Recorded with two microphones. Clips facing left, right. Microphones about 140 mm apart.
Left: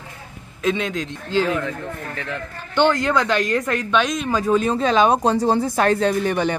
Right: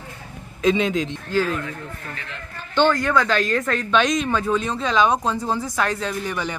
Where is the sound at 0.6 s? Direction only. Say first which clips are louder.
Right 3 dB; centre (ahead or behind).